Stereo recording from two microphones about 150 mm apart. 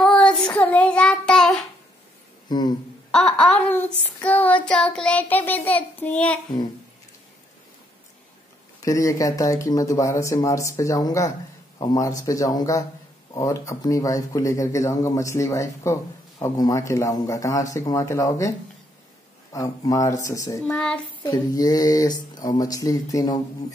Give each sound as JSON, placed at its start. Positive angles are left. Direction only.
{"t": 0.0, "sound": "child singing", "side_deg": 5}
{"t": 2.5, "sound": "speech", "side_deg": 30}
{"t": 3.1, "sound": "child singing", "side_deg": 5}
{"t": 8.8, "sound": "speech", "side_deg": 20}
{"t": 19.5, "sound": "speech", "side_deg": 25}
{"t": 20.6, "sound": "child singing", "side_deg": 5}
{"t": 21.2, "sound": "speech", "side_deg": 25}